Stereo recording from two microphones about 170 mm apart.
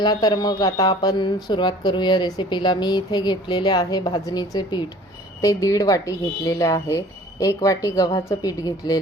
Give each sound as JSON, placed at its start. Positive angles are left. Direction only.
{"t": 0.0, "sound": "speech", "side_deg": 25}